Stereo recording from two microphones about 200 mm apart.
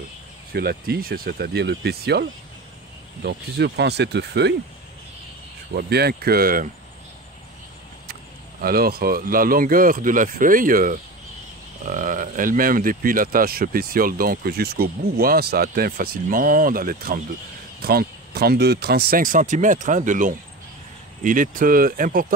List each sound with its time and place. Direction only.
0.5 s speech: 50° right (ahead or behind)
5.7 s speech: 55° right (ahead or behind)
8.1 s speech: 50° right (ahead or behind)